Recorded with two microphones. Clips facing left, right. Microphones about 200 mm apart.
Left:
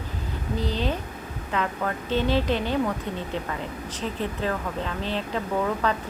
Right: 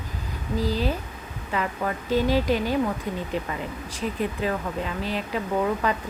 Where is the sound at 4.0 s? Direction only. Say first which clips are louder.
Right 2 dB; 10° right (ahead or behind).